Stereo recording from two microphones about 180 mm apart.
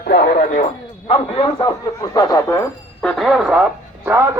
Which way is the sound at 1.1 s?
25° left (ahead or behind).